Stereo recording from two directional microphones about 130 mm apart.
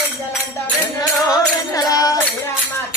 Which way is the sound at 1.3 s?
25° left (ahead or behind).